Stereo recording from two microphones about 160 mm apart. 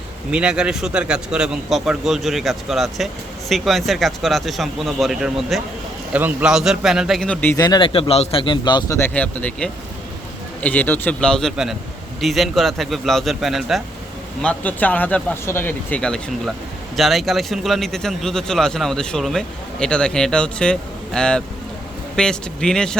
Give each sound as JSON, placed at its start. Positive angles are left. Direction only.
{"t": 0.3, "sound": "a man's voice", "side_deg": -5}
{"t": 7.5, "sound": "speech", "side_deg": 25}
{"t": 9.0, "sound": "a man's voice", "side_deg": 10}
{"t": 14.4, "sound": "a man's voice", "side_deg": 10}